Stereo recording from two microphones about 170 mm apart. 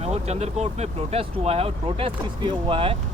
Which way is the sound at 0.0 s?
40° right (ahead or behind).